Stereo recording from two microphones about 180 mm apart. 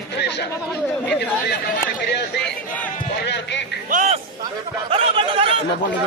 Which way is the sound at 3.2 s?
70° left (ahead or behind).